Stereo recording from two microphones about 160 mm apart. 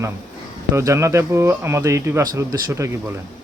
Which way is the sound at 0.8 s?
20° right (ahead or behind).